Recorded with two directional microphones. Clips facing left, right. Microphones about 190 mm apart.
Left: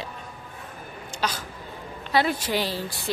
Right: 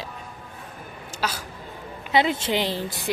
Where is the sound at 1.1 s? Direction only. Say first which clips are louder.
Even; 5° right (ahead or behind).